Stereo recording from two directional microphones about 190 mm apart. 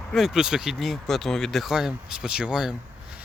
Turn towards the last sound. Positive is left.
turn(degrees=-5)  # may be behind; listen again after turning